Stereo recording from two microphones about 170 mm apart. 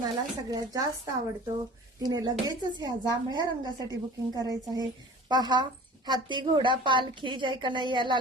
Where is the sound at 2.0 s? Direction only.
25° right (ahead or behind).